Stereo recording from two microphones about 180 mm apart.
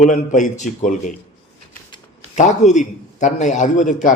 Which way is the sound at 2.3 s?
40° left (ahead or behind).